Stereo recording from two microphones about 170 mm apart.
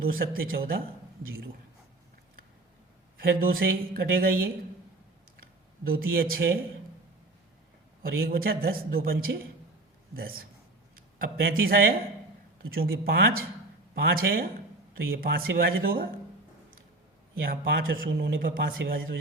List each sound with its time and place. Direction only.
0.0 s a man's voice: 60° right (ahead or behind)
3.2 s a man's voice: 60° right (ahead or behind)
5.8 s a man's voice: 60° right (ahead or behind)
8.0 s a man's voice: 60° right (ahead or behind)
17.4 s a man's voice: 55° right (ahead or behind)